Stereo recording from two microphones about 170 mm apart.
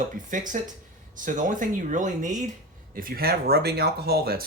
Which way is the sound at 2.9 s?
60° right (ahead or behind).